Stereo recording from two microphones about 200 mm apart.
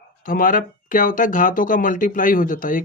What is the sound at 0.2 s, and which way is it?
Speech, 45° left (ahead or behind).